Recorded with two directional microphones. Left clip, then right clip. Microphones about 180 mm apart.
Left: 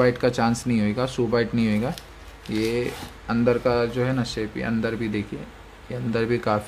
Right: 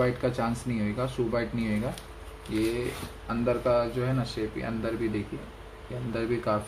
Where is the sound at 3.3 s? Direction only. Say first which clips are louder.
Left 5 dB; 65° left (ahead or behind).